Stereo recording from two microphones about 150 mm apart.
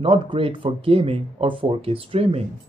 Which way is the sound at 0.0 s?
35° right (ahead or behind).